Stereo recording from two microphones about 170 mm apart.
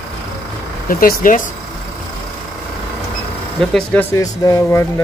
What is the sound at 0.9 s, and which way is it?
Speech, 55° left (ahead or behind).